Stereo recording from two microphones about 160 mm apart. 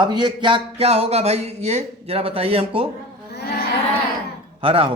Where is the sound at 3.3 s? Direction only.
70° left (ahead or behind).